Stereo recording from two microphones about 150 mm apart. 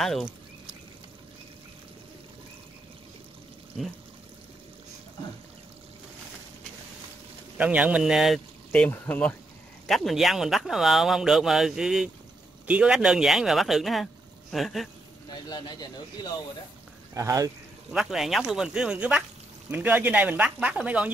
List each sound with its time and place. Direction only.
0.0 s pour: centre (ahead or behind)
7.5 s speech: 10° right (ahead or behind)
8.8 s speech: 10° left (ahead or behind)
9.8 s speech: centre (ahead or behind)
15.5 s a man's voice: 30° left (ahead or behind)
17.1 s speech: 20° right (ahead or behind)
17.9 s speech: centre (ahead or behind)